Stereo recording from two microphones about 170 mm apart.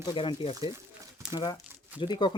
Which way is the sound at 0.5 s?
20° right (ahead or behind).